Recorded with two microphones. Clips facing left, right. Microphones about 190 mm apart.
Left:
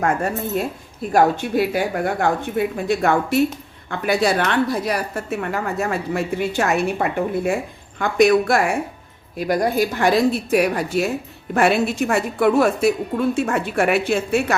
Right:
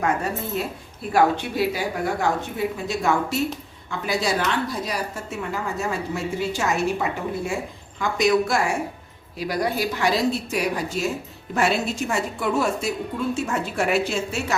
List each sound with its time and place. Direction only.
0.0 s a woman's voice: 50° left (ahead or behind)